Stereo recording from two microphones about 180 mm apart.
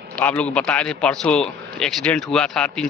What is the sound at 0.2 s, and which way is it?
Speech, 5° left (ahead or behind).